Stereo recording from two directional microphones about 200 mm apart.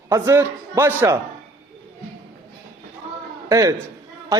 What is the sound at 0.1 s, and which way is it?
A man's voice, 10° right (ahead or behind).